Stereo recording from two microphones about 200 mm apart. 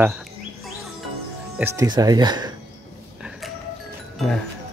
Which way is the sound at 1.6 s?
15° right (ahead or behind).